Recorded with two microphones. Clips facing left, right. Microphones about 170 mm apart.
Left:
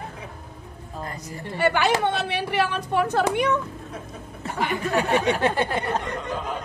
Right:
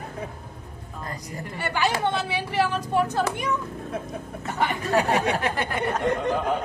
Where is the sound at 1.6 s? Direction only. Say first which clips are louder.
Left 4 dB; 60° left (ahead or behind).